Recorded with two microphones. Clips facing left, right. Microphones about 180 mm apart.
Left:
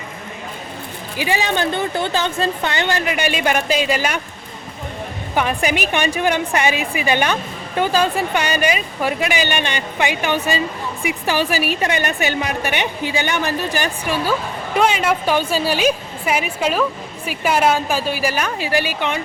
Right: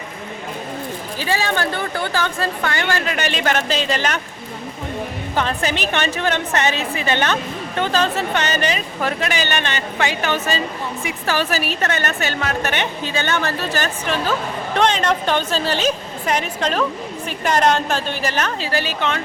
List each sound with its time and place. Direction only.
1.2 s a woman's voice: 15° left (ahead or behind)
5.3 s a woman's voice: 15° left (ahead or behind)